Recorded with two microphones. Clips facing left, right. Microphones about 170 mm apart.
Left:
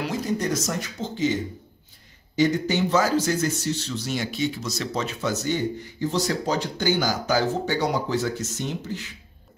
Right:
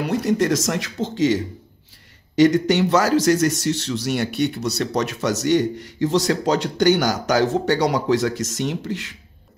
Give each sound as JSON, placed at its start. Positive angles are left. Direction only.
{"t": 0.0, "sound": "speech", "side_deg": -70}